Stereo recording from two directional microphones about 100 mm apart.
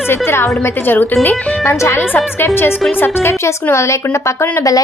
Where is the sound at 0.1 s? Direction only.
25° left (ahead or behind).